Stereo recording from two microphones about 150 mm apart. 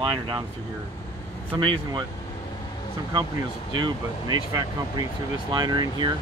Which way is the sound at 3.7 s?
30° right (ahead or behind).